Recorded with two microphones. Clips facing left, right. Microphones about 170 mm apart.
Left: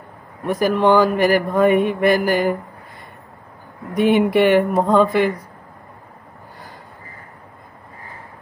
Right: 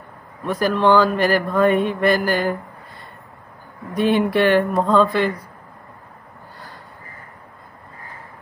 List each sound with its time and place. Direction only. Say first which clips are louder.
0.4 s mantra: left 2 dB; 15° left (ahead or behind)
3.9 s mantra: left 3 dB; 15° left (ahead or behind)